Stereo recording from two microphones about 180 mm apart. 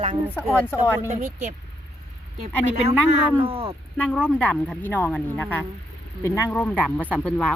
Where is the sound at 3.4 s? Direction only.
30° right (ahead or behind).